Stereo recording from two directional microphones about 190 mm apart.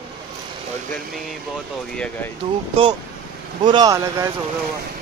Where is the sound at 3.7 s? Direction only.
20° right (ahead or behind).